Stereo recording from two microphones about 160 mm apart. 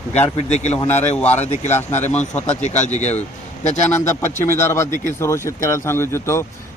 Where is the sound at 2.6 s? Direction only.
45° left (ahead or behind).